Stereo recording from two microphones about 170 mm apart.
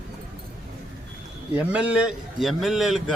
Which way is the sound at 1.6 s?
5° right (ahead or behind).